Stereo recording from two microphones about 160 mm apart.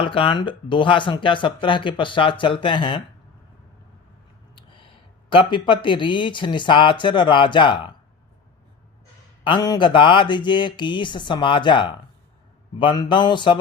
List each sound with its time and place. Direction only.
0.0 s speech: 35° left (ahead or behind)
4.5 s a sound: 30° left (ahead or behind)
5.3 s speech: 30° left (ahead or behind)
9.4 s speech: 30° left (ahead or behind)